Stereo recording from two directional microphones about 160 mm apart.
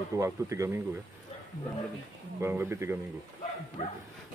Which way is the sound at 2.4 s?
15° right (ahead or behind).